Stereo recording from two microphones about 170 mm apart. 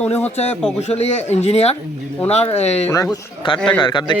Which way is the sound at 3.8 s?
25° left (ahead or behind).